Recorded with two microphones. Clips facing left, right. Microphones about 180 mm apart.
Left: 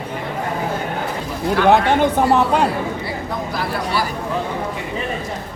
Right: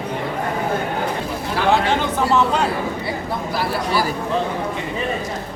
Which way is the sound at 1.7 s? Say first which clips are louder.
Left 3 dB; 55° left (ahead or behind).